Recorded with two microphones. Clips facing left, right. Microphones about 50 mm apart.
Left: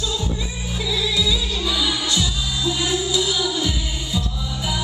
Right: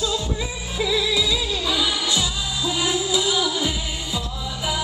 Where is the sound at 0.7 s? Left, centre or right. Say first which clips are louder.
Right 2 dB; right.